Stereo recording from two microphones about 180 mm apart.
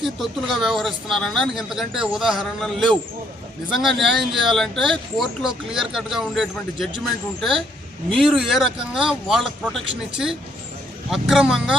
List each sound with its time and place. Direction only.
0.0 s speech: centre (ahead or behind)
8.1 s speech: centre (ahead or behind)